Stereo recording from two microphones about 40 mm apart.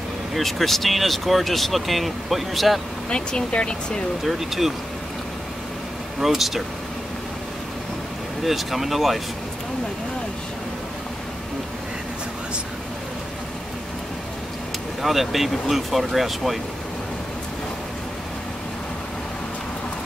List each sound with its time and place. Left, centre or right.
0.3 s speech: centre
3.1 s speech: left
4.2 s speech: centre
6.1 s speech: centre
8.5 s speech: centre
15.0 s speech: centre